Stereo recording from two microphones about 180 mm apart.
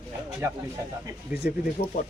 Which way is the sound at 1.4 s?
50° left (ahead or behind).